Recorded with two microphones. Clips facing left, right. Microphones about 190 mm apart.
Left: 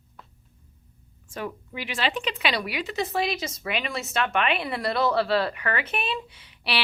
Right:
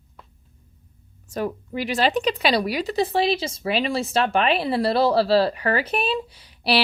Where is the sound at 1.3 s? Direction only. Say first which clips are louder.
Right 7 dB; 40° right (ahead or behind).